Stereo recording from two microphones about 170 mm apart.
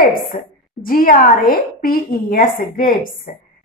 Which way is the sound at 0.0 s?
60° left (ahead or behind).